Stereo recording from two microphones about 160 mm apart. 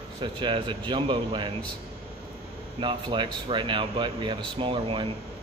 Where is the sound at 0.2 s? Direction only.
30° right (ahead or behind).